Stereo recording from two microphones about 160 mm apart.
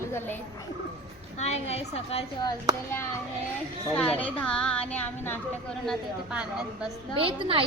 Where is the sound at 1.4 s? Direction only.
40° left (ahead or behind).